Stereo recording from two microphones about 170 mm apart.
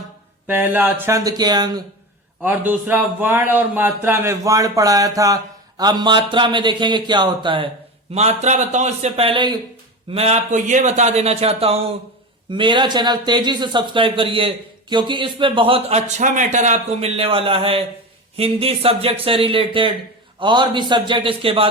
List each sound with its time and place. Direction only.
0.4 s a man's voice: 10° right (ahead or behind)
2.4 s a man's voice: 10° right (ahead or behind); by 7.7 s 30° right (ahead or behind)
8.1 s a man's voice: 40° right (ahead or behind)